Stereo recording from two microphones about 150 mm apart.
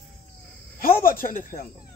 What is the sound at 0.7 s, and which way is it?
Speech, 75° left (ahead or behind).